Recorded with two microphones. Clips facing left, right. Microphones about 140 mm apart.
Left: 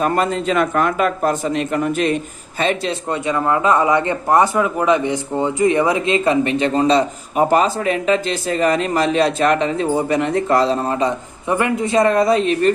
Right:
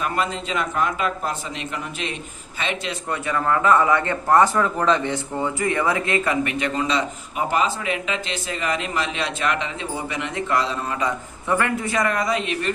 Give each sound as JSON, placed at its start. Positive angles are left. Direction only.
{"t": 0.0, "sound": "a man's voice", "side_deg": 45}
{"t": 2.9, "sound": "a man's voice", "side_deg": 20}
{"t": 11.4, "sound": "speech", "side_deg": 20}